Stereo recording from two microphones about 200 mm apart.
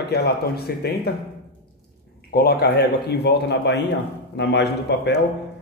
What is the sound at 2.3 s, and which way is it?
A man's voice, 50° left (ahead or behind).